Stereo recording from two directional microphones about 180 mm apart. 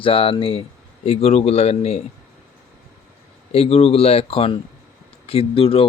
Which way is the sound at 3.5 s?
35° left (ahead or behind).